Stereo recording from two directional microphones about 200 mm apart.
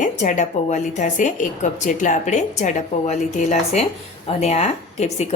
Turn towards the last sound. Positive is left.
turn(degrees=35)  # may be behind; listen again after turning